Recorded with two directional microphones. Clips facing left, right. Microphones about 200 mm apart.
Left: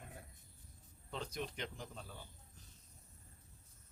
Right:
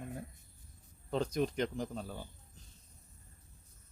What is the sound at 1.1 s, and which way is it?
Speech, 45° right (ahead or behind).